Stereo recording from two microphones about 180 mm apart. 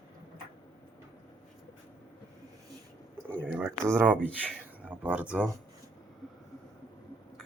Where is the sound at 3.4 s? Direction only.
10° right (ahead or behind).